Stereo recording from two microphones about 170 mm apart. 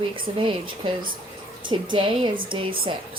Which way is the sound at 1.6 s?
25° right (ahead or behind).